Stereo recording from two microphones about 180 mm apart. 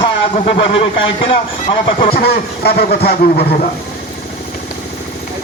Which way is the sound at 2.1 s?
60° left (ahead or behind).